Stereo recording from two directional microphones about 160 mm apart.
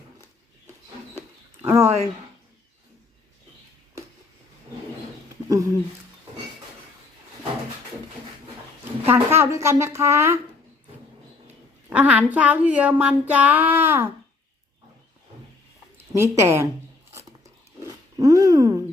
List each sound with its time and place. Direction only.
1.6 s speech: 15° right (ahead or behind)
5.5 s speech: 20° right (ahead or behind)
9.0 s speech: 15° right (ahead or behind)
11.4 s speech: 10° right (ahead or behind)
16.1 s speech: 15° right (ahead or behind)
17.2 s a sound: 20° right (ahead or behind)